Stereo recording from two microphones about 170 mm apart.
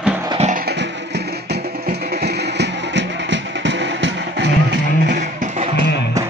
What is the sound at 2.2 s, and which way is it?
Music, 90° right.